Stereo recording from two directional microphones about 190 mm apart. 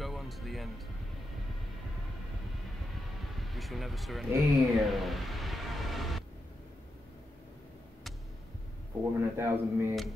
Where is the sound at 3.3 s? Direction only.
Centre (ahead or behind).